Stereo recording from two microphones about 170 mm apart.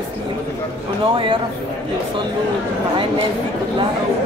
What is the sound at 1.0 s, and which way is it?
Speech, 30° right (ahead or behind).